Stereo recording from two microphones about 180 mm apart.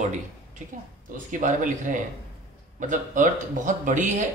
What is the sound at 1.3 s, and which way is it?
Speech, 45° right (ahead or behind).